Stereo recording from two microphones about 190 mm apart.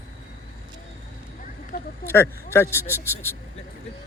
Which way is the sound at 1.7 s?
50° left (ahead or behind).